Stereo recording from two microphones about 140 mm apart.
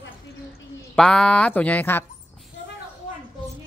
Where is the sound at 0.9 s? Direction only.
5° left (ahead or behind).